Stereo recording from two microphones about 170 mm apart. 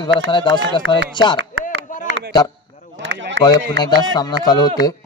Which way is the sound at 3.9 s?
25° left (ahead or behind).